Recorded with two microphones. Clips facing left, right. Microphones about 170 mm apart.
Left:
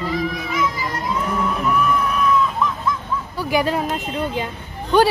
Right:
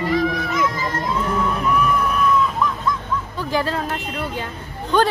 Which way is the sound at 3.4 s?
15° left (ahead or behind).